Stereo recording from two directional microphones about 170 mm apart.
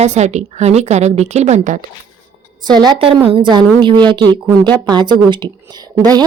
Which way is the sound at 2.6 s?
25° right (ahead or behind).